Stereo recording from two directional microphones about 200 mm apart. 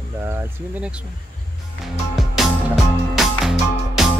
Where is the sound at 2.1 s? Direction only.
Centre (ahead or behind).